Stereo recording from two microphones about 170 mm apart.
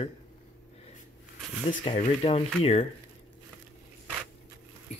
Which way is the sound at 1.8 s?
35° left (ahead or behind).